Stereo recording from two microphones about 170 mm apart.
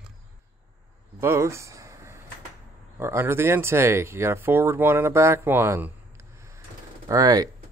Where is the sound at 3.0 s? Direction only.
15° right (ahead or behind).